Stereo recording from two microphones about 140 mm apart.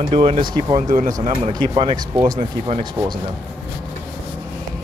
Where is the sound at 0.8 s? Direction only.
70° right (ahead or behind).